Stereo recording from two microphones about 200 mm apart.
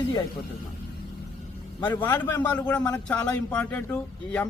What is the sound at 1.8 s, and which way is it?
Speech, 20° left (ahead or behind).